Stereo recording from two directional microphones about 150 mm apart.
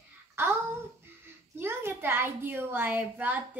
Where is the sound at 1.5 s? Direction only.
15° right (ahead or behind).